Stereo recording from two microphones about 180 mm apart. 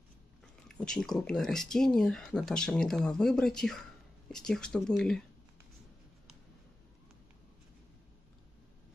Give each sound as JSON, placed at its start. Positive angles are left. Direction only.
{"t": 0.7, "sound": "speech", "side_deg": 5}